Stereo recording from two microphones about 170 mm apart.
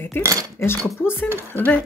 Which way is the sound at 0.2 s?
20° right (ahead or behind).